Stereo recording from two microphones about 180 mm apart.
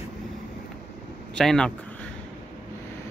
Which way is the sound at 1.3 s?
5° left (ahead or behind).